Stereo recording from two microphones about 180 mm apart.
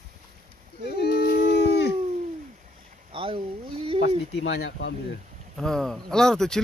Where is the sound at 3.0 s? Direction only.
30° right (ahead or behind).